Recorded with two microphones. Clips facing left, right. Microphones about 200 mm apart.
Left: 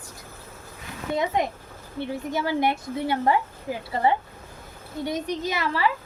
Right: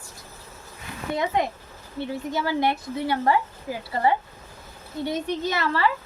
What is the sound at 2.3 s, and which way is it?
A woman's voice, 20° left (ahead or behind).